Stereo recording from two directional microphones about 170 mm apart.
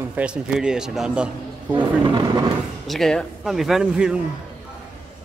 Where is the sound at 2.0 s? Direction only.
25° right (ahead or behind).